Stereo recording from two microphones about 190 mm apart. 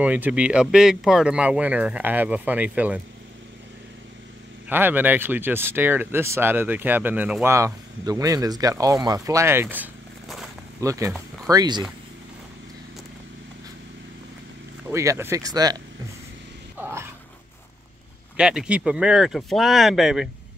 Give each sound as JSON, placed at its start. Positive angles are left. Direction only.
{"t": 0.0, "sound": "speech", "side_deg": -10}
{"t": 4.6, "sound": "speech", "side_deg": -10}
{"t": 10.8, "sound": "speech", "side_deg": -15}
{"t": 14.9, "sound": "speech", "side_deg": -15}
{"t": 16.7, "sound": "dog", "side_deg": -10}
{"t": 18.3, "sound": "speech", "side_deg": -5}